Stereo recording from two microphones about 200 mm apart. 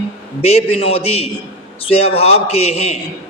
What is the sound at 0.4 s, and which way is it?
Speech, 30° left (ahead or behind).